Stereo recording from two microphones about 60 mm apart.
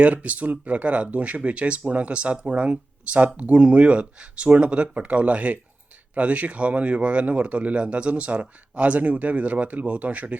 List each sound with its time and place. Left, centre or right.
0.0 s speech: right